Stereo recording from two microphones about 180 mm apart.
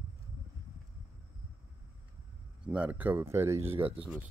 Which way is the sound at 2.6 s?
5° right (ahead or behind).